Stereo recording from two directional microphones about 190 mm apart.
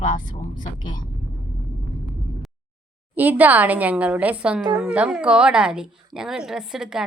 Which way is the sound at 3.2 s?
10° right (ahead or behind).